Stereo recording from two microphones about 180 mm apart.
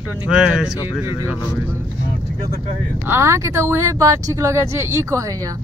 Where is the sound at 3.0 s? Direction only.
15° right (ahead or behind).